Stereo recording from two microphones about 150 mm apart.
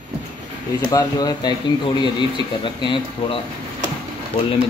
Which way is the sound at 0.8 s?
25° left (ahead or behind).